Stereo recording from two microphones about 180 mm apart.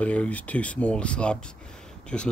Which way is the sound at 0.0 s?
5° left (ahead or behind).